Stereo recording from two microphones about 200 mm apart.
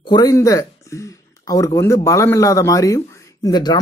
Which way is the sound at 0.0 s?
20° left (ahead or behind).